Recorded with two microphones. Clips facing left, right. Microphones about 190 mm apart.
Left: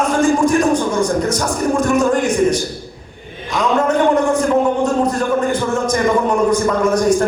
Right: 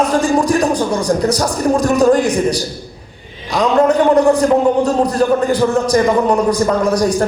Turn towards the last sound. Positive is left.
turn(degrees=-35)  # may be behind; listen again after turning